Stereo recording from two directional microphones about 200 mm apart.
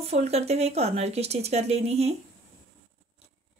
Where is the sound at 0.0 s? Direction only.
30° right (ahead or behind).